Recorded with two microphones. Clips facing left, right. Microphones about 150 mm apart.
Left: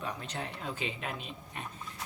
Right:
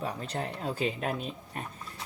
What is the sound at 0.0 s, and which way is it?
Speech, 40° right (ahead or behind).